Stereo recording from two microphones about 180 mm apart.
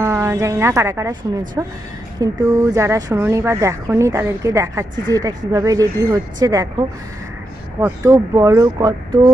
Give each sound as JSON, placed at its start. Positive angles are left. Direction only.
{"t": 0.0, "sound": "a woman's voice", "side_deg": -15}
{"t": 7.8, "sound": "speech", "side_deg": -15}